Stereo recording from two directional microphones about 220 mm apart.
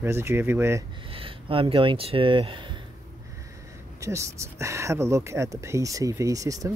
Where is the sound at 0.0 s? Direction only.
10° right (ahead or behind).